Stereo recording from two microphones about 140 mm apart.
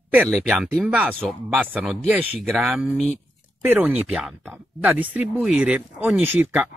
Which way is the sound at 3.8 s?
5° right (ahead or behind).